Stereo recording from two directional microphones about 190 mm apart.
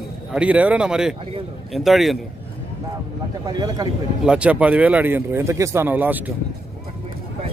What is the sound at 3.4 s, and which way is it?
Speech, 20° right (ahead or behind).